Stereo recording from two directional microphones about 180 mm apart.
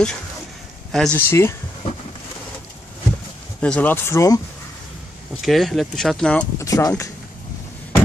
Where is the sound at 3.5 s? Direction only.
5° left (ahead or behind).